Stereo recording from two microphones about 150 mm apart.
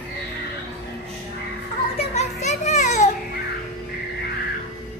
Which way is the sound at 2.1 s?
50° left (ahead or behind).